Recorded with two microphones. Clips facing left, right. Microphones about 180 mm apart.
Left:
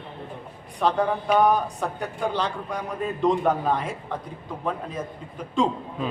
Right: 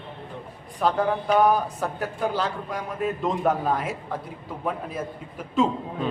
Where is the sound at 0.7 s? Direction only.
Centre (ahead or behind).